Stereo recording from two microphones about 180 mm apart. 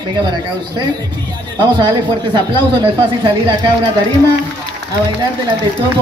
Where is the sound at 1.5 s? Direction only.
25° right (ahead or behind).